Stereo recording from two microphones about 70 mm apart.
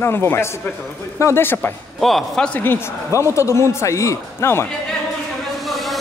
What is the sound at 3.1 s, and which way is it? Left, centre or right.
A man's voice, left.